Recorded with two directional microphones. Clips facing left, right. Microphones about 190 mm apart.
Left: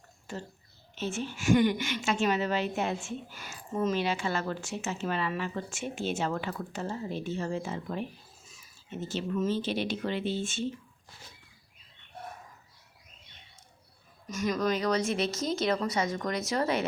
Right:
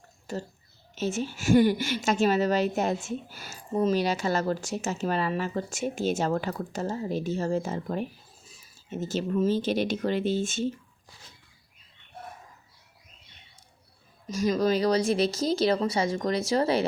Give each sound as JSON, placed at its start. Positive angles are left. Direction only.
{"t": 0.3, "sound": "a woman's voice", "side_deg": -40}
{"t": 14.3, "sound": "a woman's voice", "side_deg": -30}